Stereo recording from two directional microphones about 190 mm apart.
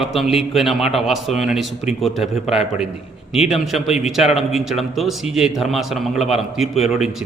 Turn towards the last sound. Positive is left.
turn(degrees=0)  # may be behind; listen again after turning